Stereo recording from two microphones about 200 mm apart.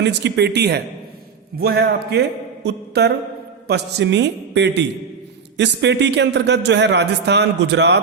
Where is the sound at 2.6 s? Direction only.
55° right (ahead or behind).